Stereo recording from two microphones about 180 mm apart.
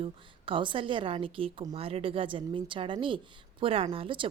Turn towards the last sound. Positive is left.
turn(degrees=-30)  # may be behind; listen again after turning